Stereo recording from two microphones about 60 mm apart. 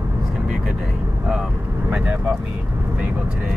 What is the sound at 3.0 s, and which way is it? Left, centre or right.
Speech, right.